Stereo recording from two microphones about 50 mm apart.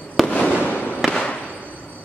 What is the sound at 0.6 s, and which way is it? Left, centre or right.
Fireworks, left.